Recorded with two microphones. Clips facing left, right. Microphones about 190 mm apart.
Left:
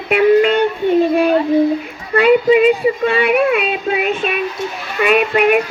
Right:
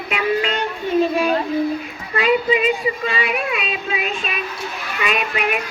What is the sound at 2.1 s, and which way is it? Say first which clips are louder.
Child singing: left 7 dB; 55° left (ahead or behind).